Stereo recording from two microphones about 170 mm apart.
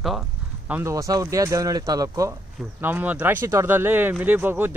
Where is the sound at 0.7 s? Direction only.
15° right (ahead or behind).